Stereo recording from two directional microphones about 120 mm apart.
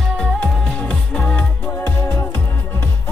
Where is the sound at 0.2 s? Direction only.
Centre (ahead or behind).